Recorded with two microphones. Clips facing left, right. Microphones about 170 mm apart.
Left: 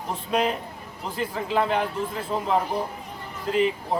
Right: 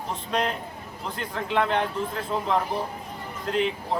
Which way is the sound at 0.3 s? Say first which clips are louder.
Left 3 dB; 5° left (ahead or behind).